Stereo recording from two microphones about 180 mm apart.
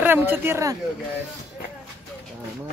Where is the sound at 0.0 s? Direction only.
10° right (ahead or behind).